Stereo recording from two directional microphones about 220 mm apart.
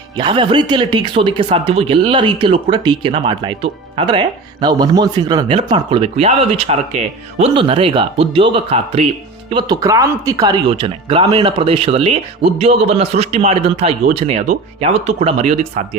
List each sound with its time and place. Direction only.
0.2 s speech: 20° right (ahead or behind)